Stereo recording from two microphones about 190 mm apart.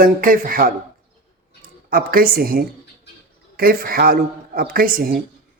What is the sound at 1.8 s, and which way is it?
A man's voice, 50° right (ahead or behind).